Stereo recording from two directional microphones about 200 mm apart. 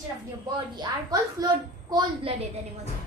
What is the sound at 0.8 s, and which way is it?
A woman's voice, 20° right (ahead or behind).